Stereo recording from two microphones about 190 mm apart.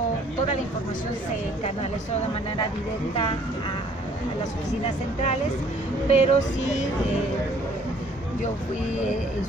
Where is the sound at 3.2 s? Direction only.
30° left (ahead or behind).